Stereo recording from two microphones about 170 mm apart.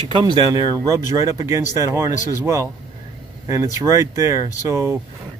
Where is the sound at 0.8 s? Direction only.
20° right (ahead or behind).